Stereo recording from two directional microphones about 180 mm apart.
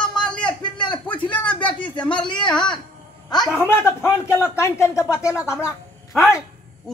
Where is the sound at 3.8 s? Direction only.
15° left (ahead or behind).